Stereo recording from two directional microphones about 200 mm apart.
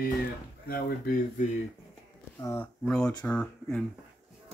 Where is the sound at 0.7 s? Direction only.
45° left (ahead or behind).